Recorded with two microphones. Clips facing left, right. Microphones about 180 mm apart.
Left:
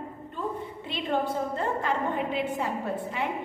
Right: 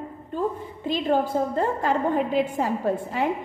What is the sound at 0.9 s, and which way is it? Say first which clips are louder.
A woman's voice: right 6 dB; 45° right (ahead or behind).